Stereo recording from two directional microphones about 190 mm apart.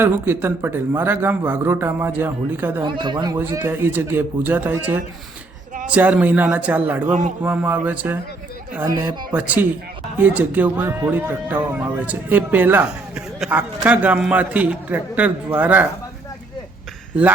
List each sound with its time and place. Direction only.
0.0 s speech: 10° right (ahead or behind)
2.8 s speech: 25° right (ahead or behind); by 7.1 s 10° right (ahead or behind)
7.1 s speech: 40° right (ahead or behind)
7.4 s speech: 10° right (ahead or behind)
9.3 s speech: 10° right (ahead or behind)